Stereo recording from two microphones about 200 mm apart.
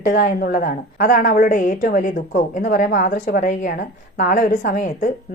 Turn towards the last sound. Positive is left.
turn(degrees=40)  # may be behind; listen again after turning